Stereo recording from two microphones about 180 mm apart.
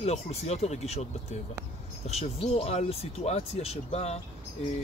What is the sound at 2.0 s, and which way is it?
Speech, 35° left (ahead or behind).